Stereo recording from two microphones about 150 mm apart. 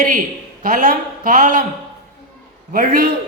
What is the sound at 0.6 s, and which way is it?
A man's voice, 65° right (ahead or behind).